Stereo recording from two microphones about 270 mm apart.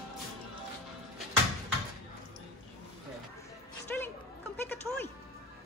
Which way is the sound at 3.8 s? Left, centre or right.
Centre.